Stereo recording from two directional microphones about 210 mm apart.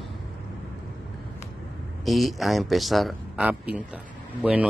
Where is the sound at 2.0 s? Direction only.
Centre (ahead or behind).